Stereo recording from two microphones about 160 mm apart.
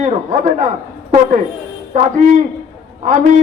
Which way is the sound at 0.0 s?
45° right (ahead or behind).